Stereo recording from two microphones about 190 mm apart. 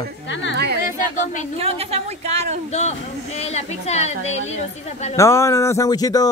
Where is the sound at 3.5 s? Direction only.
35° left (ahead or behind).